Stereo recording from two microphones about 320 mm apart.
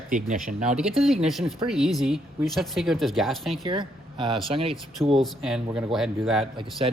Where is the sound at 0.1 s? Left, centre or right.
Right.